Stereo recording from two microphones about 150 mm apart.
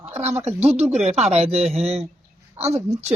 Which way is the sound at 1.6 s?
Centre (ahead or behind).